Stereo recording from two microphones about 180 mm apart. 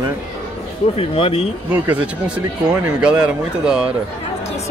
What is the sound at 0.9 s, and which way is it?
Speech, 35° left (ahead or behind).